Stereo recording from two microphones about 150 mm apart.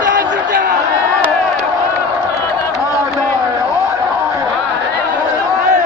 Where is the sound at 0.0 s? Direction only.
65° right (ahead or behind).